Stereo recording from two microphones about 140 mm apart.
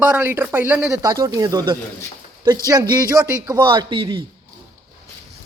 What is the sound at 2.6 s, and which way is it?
A man's voice, 25° right (ahead or behind).